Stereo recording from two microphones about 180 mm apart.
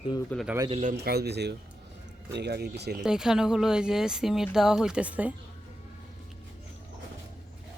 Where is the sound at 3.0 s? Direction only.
5° right (ahead or behind).